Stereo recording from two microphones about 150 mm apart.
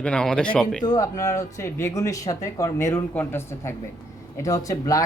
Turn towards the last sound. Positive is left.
turn(degrees=20)  # may be behind; listen again after turning